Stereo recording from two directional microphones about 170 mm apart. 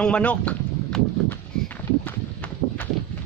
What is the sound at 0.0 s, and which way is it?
Speech, 5° left (ahead or behind).